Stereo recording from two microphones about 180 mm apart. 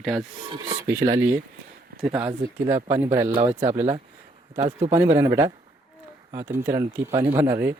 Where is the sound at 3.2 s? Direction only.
30° right (ahead or behind).